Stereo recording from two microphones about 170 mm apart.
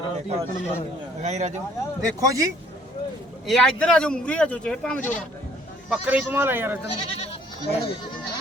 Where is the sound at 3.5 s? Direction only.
5° left (ahead or behind).